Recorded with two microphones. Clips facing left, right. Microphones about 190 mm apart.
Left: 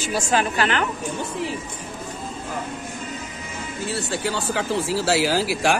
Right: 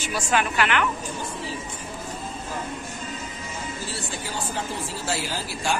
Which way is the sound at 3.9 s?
70° left (ahead or behind).